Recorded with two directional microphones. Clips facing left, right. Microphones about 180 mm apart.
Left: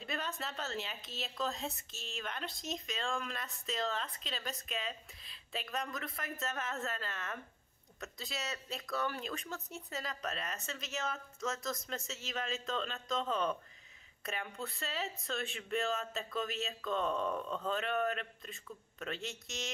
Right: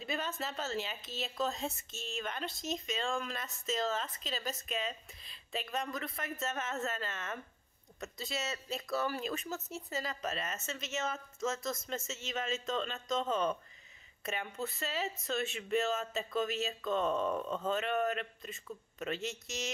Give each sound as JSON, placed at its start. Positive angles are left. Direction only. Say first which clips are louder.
{"t": 0.0, "sound": "speech", "louder": "right 3 dB", "side_deg": 0}